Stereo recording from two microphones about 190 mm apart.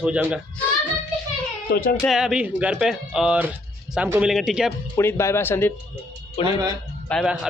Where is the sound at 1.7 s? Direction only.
50° left (ahead or behind).